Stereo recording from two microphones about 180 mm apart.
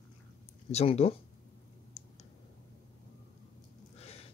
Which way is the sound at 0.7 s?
35° left (ahead or behind).